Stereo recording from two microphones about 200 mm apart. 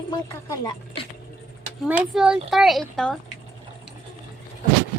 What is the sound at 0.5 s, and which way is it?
Speech, 20° left (ahead or behind).